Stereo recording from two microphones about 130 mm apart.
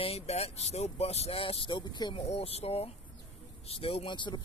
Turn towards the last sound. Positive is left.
turn(degrees=35)  # may be behind; listen again after turning